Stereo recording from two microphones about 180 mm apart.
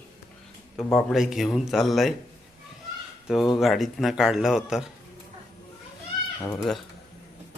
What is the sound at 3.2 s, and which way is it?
Speech, centre (ahead or behind).